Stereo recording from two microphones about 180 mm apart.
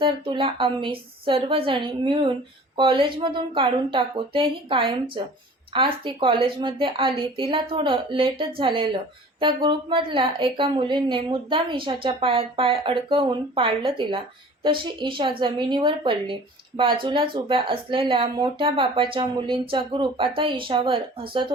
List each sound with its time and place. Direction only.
0.0 s a woman's voice: 30° right (ahead or behind)